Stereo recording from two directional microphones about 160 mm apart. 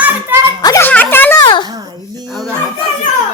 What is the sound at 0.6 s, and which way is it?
Speech, 20° left (ahead or behind).